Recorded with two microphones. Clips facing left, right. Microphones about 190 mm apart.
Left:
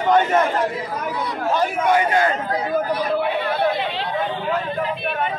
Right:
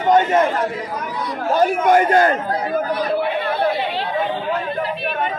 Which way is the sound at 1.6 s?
45° right (ahead or behind).